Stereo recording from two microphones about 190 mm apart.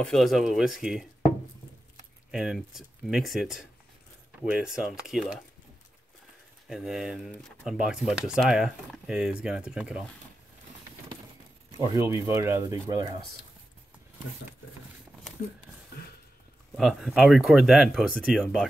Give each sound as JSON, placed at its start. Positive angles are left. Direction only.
{"t": 0.0, "sound": "speech", "side_deg": 0}
{"t": 2.3, "sound": "speech", "side_deg": 0}
{"t": 6.7, "sound": "speech", "side_deg": 0}
{"t": 11.7, "sound": "speech", "side_deg": -15}
{"t": 16.7, "sound": "speech", "side_deg": 0}